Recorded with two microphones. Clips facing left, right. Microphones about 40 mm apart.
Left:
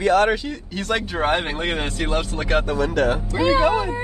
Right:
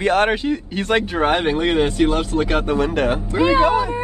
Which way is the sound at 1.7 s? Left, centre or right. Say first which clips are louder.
Right 8 dB; right.